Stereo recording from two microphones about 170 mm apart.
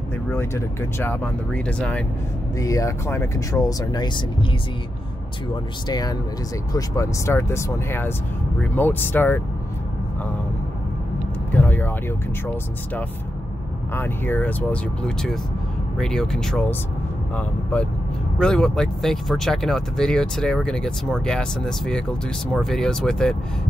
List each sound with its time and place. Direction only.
0.3 s speech: 15° left (ahead or behind)
2.6 s speech: 20° left (ahead or behind)
5.9 s speech: 20° left (ahead or behind)
11.5 s vehicle: 10° left (ahead or behind)
13.9 s speech: 10° left (ahead or behind)